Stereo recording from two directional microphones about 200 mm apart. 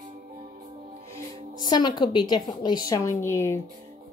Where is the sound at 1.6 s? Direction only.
20° left (ahead or behind).